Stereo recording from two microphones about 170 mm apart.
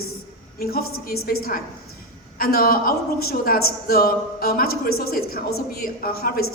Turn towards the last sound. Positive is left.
turn(degrees=60)  # may be behind; listen again after turning